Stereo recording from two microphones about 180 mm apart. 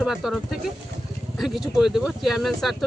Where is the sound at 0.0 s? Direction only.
Centre (ahead or behind).